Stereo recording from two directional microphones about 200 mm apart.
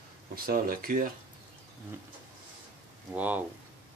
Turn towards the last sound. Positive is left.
turn(degrees=-5)  # may be behind; listen again after turning